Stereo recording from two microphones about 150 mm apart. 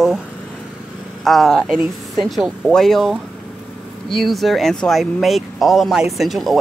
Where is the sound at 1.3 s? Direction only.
Centre (ahead or behind).